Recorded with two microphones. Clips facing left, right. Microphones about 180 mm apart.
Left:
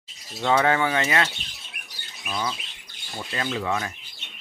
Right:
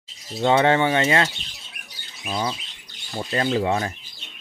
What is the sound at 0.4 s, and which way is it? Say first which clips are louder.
Speech: right 3 dB; 25° right (ahead or behind).